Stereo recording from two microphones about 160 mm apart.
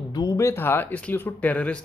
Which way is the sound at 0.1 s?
20° left (ahead or behind).